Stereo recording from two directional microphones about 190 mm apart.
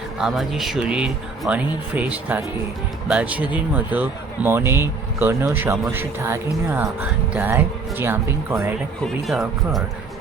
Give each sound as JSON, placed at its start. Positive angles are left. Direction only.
{"t": 0.2, "sound": "speech", "side_deg": 0}
{"t": 9.0, "sound": "speech", "side_deg": 0}